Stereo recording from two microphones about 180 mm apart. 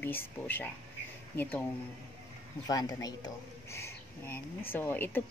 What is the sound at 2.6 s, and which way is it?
A woman's voice, 20° left (ahead or behind).